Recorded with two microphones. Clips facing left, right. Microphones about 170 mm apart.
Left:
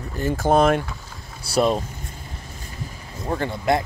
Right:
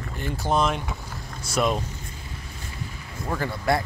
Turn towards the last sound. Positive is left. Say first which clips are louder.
# left 3 dB
turn(degrees=20)  # may be behind; listen again after turning